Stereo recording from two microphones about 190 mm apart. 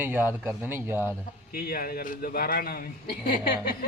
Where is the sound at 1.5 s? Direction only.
50° left (ahead or behind).